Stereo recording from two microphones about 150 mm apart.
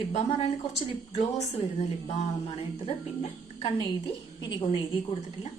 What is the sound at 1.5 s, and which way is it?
A woman's voice, 45° left (ahead or behind).